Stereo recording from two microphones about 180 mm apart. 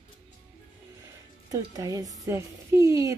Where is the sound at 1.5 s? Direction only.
20° right (ahead or behind).